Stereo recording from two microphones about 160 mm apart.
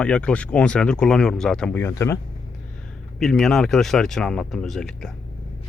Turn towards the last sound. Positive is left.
turn(degrees=5)  # may be behind; listen again after turning